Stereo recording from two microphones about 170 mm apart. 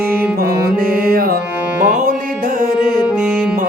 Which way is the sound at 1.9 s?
50° right (ahead or behind).